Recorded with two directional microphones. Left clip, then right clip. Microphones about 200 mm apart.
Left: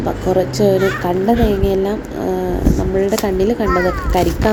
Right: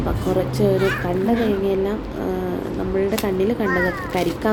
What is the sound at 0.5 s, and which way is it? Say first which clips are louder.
Speech: left 5 dB; 10° left (ahead or behind).